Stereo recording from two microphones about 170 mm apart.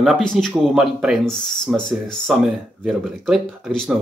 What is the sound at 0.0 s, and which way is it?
Speech, centre (ahead or behind).